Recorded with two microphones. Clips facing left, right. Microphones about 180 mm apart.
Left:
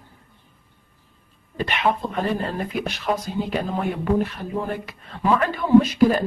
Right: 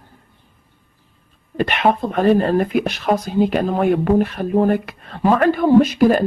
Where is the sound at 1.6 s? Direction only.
60° right (ahead or behind).